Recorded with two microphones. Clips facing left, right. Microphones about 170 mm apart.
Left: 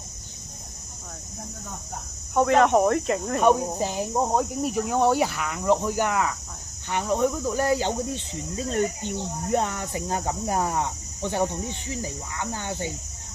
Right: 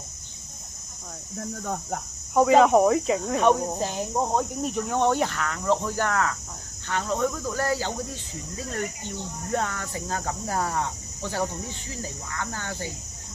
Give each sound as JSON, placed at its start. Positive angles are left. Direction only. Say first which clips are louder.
{"t": 1.6, "sound": "speech", "louder": "right 11 dB", "side_deg": -90}
{"t": 2.3, "sound": "speech", "louder": "right 2 dB", "side_deg": 0}